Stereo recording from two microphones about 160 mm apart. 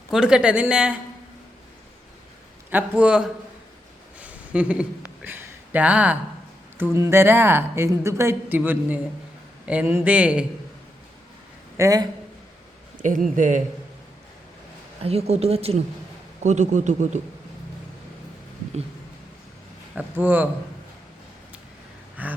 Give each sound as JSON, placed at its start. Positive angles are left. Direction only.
{"t": 0.1, "sound": "a woman's voice", "side_deg": -5}
{"t": 2.6, "sound": "a woman's voice", "side_deg": -10}
{"t": 4.2, "sound": "a sound", "side_deg": -10}
{"t": 6.7, "sound": "a woman's voice", "side_deg": -15}
{"t": 11.8, "sound": "a man's voice", "side_deg": -20}
{"t": 13.0, "sound": "a man's voice", "side_deg": -55}
{"t": 15.0, "sound": "a man's voice", "side_deg": -40}
{"t": 20.0, "sound": "a woman's voice", "side_deg": -10}
{"t": 22.2, "sound": "a woman's voice", "side_deg": -10}